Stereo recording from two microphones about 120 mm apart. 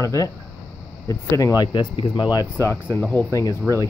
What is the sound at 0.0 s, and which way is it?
Speech, 25° left (ahead or behind).